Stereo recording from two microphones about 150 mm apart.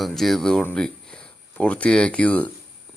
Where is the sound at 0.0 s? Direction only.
Centre (ahead or behind).